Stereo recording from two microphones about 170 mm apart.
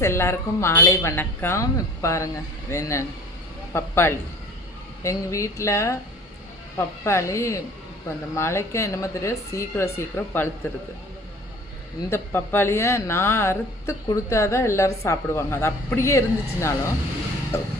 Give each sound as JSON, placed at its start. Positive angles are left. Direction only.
{"t": 0.0, "sound": "a woman's voice", "side_deg": 15}
{"t": 12.1, "sound": "a woman's voice", "side_deg": 10}